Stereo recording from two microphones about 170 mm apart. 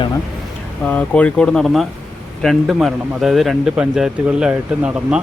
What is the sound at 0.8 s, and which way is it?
A man's voice, 10° left (ahead or behind).